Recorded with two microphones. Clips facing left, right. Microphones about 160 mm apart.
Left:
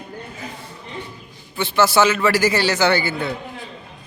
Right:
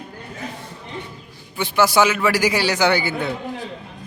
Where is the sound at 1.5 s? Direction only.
10° right (ahead or behind).